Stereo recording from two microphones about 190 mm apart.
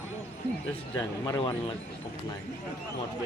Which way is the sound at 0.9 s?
20° left (ahead or behind).